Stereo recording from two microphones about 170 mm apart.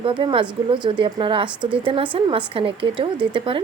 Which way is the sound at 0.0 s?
30° right (ahead or behind).